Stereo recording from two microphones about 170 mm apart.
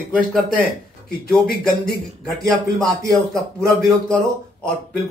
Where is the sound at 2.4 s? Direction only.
20° right (ahead or behind).